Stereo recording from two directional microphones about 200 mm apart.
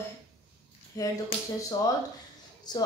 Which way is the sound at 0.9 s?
15° left (ahead or behind).